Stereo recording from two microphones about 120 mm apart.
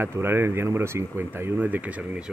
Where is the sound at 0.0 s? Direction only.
20° right (ahead or behind).